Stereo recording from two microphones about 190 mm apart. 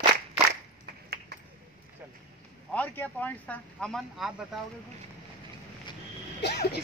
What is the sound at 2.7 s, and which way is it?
Speech, 10° left (ahead or behind).